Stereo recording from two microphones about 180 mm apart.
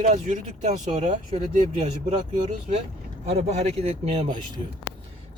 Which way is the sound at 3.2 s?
40° right (ahead or behind).